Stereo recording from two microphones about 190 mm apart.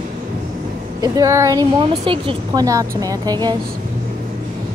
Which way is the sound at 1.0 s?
15° right (ahead or behind).